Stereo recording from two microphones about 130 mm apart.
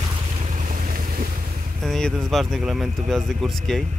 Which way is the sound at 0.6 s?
90° right.